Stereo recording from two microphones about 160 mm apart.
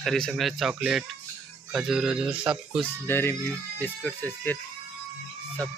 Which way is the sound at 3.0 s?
15° left (ahead or behind).